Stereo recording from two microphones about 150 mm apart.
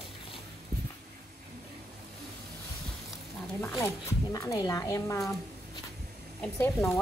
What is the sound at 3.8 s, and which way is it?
Speech, 20° left (ahead or behind).